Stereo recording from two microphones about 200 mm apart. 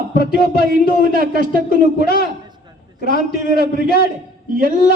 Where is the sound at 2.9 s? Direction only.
40° right (ahead or behind).